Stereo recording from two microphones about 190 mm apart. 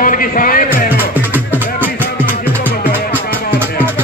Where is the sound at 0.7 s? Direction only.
50° left (ahead or behind).